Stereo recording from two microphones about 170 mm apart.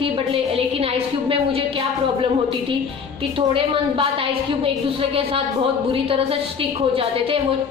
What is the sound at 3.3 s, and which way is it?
A woman's voice, 30° right (ahead or behind).